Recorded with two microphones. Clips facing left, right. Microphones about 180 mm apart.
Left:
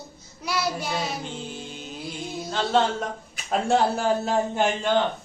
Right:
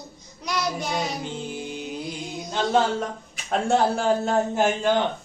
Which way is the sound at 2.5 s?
10° right (ahead or behind).